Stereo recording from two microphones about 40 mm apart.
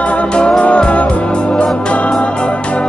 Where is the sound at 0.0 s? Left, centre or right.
Left.